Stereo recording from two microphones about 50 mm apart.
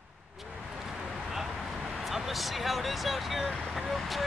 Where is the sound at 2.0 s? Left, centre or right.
Centre.